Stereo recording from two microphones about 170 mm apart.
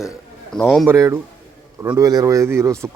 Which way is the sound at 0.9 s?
15° right (ahead or behind).